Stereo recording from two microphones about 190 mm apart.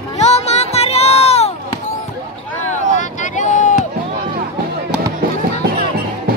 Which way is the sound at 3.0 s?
40° left (ahead or behind).